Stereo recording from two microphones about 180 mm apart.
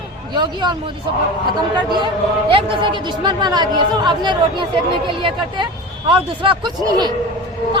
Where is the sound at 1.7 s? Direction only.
25° right (ahead or behind).